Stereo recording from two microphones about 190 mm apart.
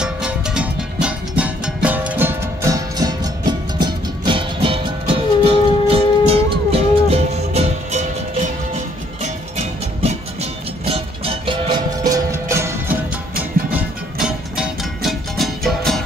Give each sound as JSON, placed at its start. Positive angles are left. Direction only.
{"t": 0.0, "sound": "music", "side_deg": -5}